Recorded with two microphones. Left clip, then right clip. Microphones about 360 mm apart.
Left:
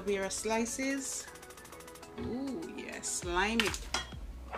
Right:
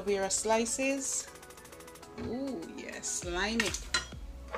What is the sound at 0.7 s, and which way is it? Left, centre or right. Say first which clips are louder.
Speech: right 4 dB; centre.